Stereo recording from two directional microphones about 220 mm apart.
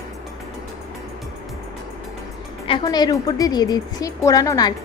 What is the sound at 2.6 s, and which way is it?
A woman's voice, 20° left (ahead or behind).